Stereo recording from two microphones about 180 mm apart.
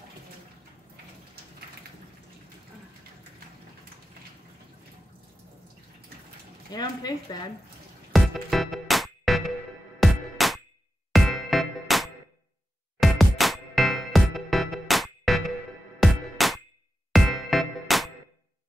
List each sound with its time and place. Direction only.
6.7 s speech: 20° left (ahead or behind)
8.1 s music: centre (ahead or behind)